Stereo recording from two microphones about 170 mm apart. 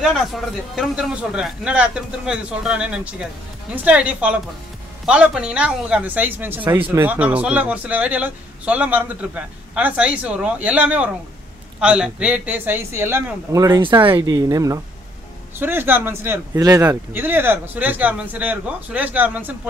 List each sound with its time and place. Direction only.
0.0 s a man's voice: centre (ahead or behind)